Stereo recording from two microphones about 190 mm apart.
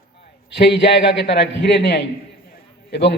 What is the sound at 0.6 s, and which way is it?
A man's voice, 60° left (ahead or behind).